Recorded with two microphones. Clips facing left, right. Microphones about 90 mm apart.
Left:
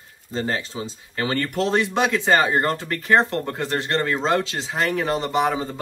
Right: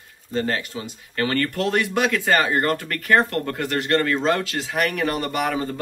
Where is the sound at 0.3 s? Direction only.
25° left (ahead or behind).